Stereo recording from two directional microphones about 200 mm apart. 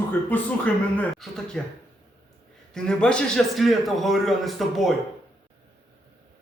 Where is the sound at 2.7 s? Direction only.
5° left (ahead or behind).